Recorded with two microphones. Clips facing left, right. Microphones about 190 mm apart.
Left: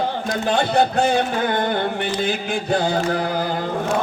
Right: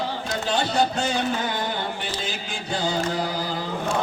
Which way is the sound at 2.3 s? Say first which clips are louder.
Left 9 dB; 60° left (ahead or behind).